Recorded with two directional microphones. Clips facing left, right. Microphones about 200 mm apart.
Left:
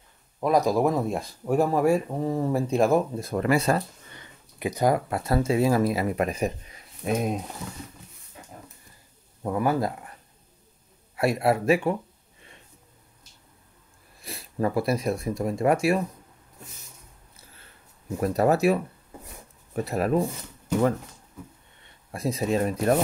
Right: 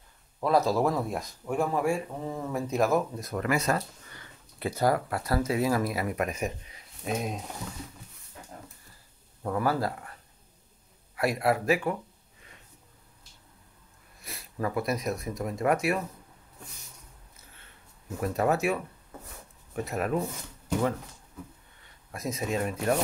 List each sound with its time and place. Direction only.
0.4 s speech: 15° left (ahead or behind)
1.4 s speech: 40° left (ahead or behind)
4.2 s speech: 15° left (ahead or behind); by 6.5 s 30° left (ahead or behind)
6.7 s a sound: 50° left (ahead or behind)
9.4 s speech: 20° left (ahead or behind)
11.1 s speech: 25° left (ahead or behind)
14.2 s speech: 30° left (ahead or behind)
18.2 s speech: 35° left (ahead or behind)
19.1 s a sound: 10° left (ahead or behind)
19.7 s speech: 35° left (ahead or behind)
22.1 s speech: 30° left (ahead or behind)